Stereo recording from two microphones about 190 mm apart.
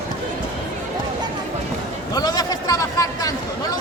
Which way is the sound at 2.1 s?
20° left (ahead or behind).